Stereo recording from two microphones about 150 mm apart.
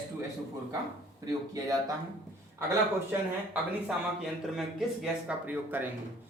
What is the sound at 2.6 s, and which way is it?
Speech, 15° right (ahead or behind).